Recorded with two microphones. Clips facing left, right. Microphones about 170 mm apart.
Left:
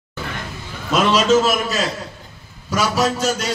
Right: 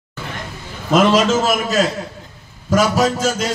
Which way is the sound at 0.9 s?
50° right (ahead or behind).